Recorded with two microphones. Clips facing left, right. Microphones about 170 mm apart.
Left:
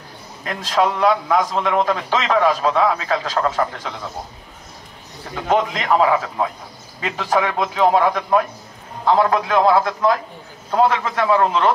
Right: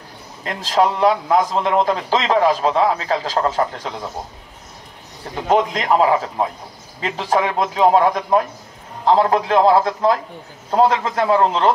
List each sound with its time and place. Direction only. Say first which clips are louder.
0.4 s a man's voice: right 2 dB; 30° right (ahead or behind)
5.3 s a man's voice: right 2 dB; 30° right (ahead or behind)